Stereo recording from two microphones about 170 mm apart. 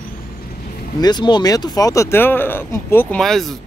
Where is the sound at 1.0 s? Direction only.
25° left (ahead or behind).